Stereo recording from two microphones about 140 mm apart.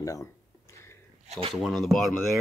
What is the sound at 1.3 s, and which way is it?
Speech, 40° right (ahead or behind).